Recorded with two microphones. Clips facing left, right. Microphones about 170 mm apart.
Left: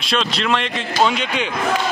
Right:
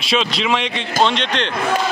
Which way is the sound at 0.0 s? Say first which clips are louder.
Right 2 dB; centre (ahead or behind).